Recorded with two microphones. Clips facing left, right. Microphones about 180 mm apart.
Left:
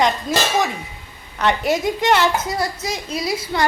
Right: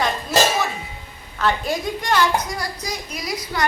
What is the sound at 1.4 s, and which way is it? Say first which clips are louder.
A woman's voice: left 3 dB; 20° left (ahead or behind).